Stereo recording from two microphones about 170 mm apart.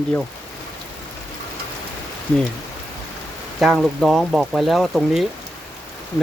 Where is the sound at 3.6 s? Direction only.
Centre (ahead or behind).